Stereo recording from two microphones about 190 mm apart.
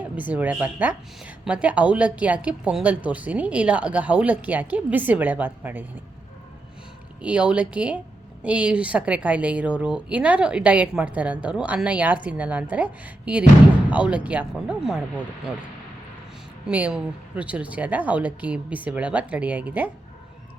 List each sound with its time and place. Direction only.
0.0 s a woman's voice: 10° right (ahead or behind)
7.2 s a woman's voice: 5° right (ahead or behind)
16.6 s a woman's voice: 5° right (ahead or behind)